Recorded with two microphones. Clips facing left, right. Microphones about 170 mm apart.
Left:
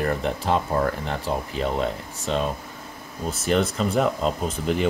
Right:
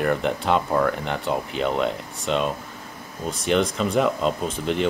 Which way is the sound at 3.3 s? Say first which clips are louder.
Right 1 dB; 5° left (ahead or behind).